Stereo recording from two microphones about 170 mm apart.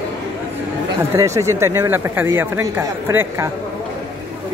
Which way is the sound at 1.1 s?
20° right (ahead or behind).